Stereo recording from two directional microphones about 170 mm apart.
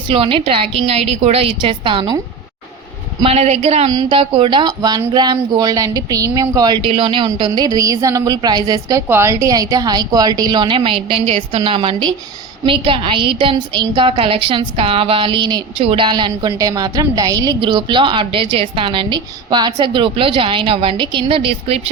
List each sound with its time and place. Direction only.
0.1 s a woman's voice: 30° right (ahead or behind)
3.2 s a woman's voice: 40° right (ahead or behind)
3.8 s a woman's voice: 25° right (ahead or behind)